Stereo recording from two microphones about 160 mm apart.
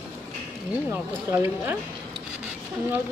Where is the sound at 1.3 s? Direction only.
15° right (ahead or behind).